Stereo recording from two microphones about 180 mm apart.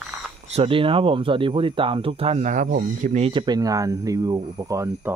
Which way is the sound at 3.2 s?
25° right (ahead or behind).